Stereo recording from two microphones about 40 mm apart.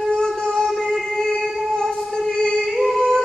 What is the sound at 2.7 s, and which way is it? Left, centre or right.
Singing, centre.